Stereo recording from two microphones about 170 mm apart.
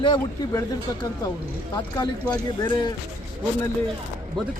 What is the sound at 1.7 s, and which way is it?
Speech, 25° left (ahead or behind).